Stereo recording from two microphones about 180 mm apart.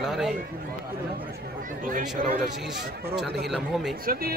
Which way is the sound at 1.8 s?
50° right (ahead or behind).